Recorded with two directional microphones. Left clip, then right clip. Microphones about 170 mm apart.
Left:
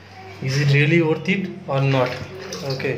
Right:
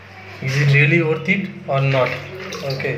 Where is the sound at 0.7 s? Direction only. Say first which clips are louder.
Right 2 dB; 15° left (ahead or behind).